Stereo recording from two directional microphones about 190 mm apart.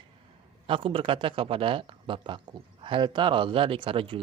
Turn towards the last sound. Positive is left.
turn(degrees=-30)  # may be behind; listen again after turning